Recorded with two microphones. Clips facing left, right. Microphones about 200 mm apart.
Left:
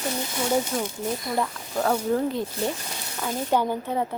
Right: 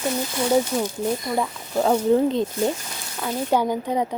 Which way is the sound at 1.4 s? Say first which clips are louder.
Right 3 dB; 15° right (ahead or behind).